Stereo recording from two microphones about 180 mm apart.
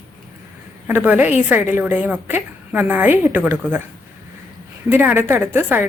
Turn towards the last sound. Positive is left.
turn(degrees=-10)  # may be behind; listen again after turning